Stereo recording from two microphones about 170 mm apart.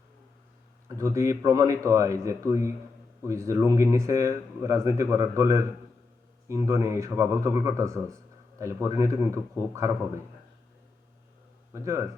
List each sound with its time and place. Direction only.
0.9 s speech: 15° right (ahead or behind)
11.7 s speech: 15° right (ahead or behind)